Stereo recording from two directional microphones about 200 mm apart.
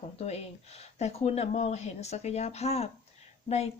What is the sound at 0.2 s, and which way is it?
Speech, 30° left (ahead or behind).